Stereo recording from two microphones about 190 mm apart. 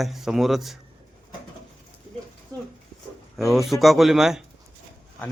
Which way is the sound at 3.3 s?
Centre (ahead or behind).